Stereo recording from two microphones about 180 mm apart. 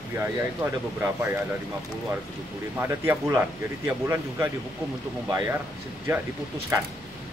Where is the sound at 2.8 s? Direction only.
15° right (ahead or behind).